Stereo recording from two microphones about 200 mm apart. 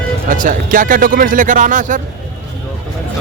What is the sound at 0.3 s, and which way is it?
Speech, 40° right (ahead or behind).